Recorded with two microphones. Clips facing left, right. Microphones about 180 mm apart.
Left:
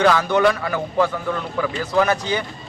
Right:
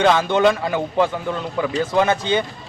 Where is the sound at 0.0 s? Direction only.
25° right (ahead or behind).